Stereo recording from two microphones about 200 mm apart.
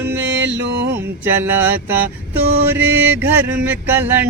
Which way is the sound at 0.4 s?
65° right (ahead or behind).